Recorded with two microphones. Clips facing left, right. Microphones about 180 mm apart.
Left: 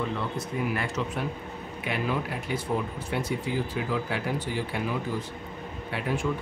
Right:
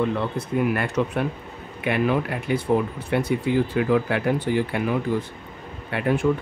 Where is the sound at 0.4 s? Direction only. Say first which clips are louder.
Right 7 dB; 60° right (ahead or behind).